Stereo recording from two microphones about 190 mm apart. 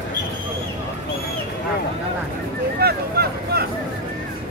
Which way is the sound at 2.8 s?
55° right (ahead or behind).